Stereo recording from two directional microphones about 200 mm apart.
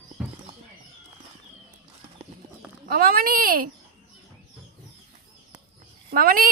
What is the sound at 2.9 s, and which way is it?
Speech, 45° right (ahead or behind).